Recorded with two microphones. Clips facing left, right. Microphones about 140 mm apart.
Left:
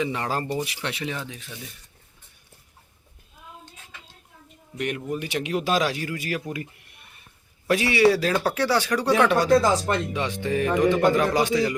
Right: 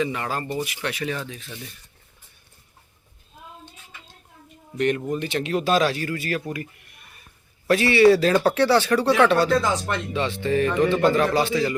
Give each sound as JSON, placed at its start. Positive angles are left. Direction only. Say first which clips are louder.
{"t": 0.1, "sound": "speech", "louder": "left 1 dB", "side_deg": 30}
{"t": 4.8, "sound": "speech", "louder": "right 5 dB", "side_deg": 10}
{"t": 7.7, "sound": "speech", "louder": "right 4 dB", "side_deg": 15}